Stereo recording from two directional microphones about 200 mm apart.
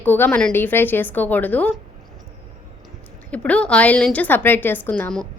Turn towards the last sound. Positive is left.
turn(degrees=5)  # may be behind; listen again after turning